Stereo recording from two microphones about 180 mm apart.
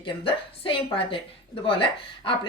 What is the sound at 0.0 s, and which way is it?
Speech, 30° left (ahead or behind).